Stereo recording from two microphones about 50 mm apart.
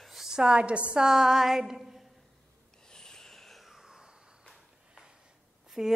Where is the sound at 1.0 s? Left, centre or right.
Centre.